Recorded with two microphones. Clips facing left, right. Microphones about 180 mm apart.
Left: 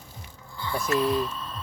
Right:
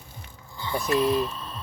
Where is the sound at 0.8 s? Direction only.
20° right (ahead or behind).